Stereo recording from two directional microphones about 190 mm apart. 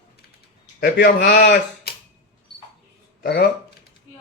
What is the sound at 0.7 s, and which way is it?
Speech, 55° left (ahead or behind).